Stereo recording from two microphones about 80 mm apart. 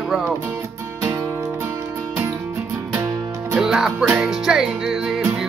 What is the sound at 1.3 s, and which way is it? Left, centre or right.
Music, right.